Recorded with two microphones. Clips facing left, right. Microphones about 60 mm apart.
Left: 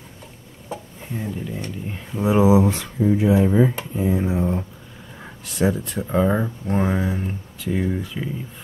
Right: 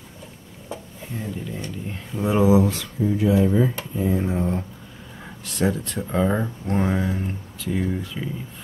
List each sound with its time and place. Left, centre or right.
0.7 s a sound: centre
1.9 s speech: centre
3.7 s speech: centre